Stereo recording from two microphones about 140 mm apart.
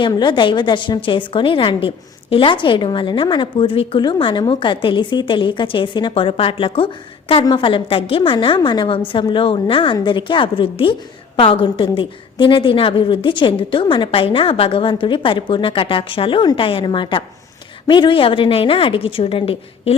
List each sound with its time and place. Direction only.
0.1 s a woman's voice: 35° left (ahead or behind)